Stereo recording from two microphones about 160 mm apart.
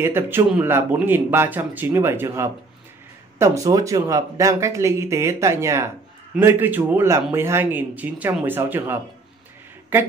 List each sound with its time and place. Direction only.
0.0 s speech: 15° right (ahead or behind)